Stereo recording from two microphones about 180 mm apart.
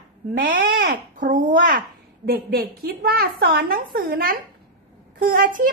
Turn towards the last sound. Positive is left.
turn(degrees=-50)  # may be behind; listen again after turning